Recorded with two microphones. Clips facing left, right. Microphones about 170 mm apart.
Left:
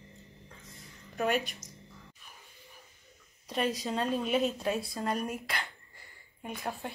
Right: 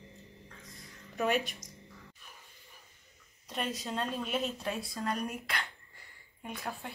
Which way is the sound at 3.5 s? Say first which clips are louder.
Left 4 dB; centre (ahead or behind).